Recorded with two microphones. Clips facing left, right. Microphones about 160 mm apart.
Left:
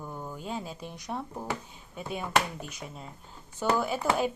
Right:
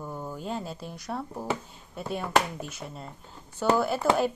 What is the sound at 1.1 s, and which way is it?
A woman's voice, 5° right (ahead or behind).